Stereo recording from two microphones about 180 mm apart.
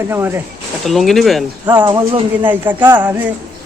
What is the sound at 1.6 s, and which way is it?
Speech, 25° right (ahead or behind).